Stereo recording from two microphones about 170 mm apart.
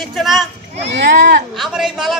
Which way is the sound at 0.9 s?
90° right.